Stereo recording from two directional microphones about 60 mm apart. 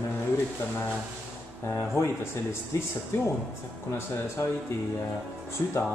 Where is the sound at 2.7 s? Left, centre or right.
Left.